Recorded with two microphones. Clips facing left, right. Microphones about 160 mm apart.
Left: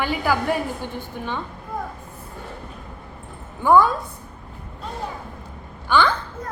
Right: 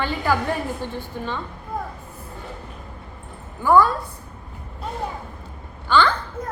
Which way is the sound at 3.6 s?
20° left (ahead or behind).